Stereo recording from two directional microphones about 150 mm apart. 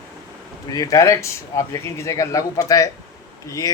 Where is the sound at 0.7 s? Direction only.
20° left (ahead or behind).